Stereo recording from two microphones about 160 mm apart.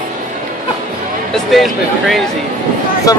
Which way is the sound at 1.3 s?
Centre (ahead or behind).